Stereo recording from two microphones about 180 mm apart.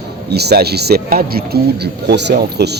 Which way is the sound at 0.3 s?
65° right (ahead or behind).